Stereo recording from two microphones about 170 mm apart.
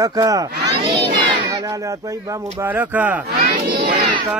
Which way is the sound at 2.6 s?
10° right (ahead or behind).